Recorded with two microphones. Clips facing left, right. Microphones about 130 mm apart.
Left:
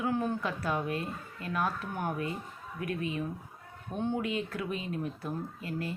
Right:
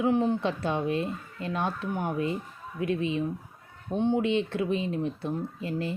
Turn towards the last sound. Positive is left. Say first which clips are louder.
# right 5 dB
turn(degrees=-25)  # may be behind; listen again after turning